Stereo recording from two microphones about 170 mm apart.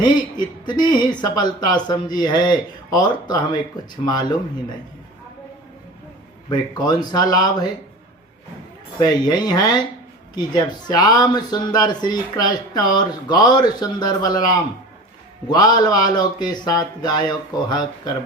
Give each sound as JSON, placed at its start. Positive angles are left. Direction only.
{"t": 0.0, "sound": "speech", "side_deg": 25}
{"t": 6.5, "sound": "speech", "side_deg": 25}
{"t": 9.0, "sound": "speech", "side_deg": 25}